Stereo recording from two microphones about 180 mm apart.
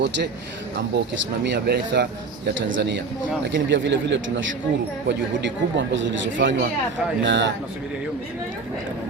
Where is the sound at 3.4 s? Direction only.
85° right.